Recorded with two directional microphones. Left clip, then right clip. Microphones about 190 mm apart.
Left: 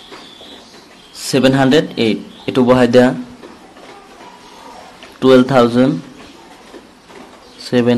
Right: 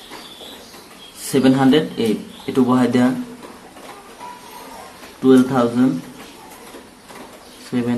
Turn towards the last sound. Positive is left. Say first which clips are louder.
# left 10 dB
turn(degrees=50)  # may be behind; listen again after turning